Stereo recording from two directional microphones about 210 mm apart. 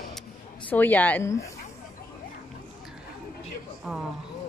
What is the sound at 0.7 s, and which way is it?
Speech, 10° left (ahead or behind).